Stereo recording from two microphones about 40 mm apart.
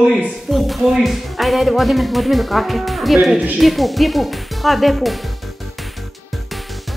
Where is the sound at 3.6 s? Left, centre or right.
Centre.